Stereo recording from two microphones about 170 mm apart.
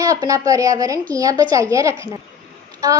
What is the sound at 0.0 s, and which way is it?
A woman's voice, 20° right (ahead or behind).